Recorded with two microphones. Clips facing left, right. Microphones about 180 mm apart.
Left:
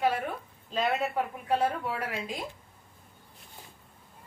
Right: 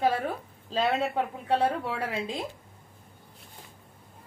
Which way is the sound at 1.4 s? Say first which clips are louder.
Right 2 dB; 30° right (ahead or behind).